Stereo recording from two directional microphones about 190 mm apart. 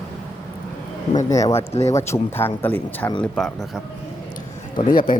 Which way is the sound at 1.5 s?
35° left (ahead or behind).